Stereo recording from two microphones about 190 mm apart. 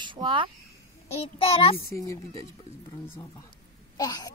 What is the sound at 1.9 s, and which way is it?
Speech, 15° left (ahead or behind).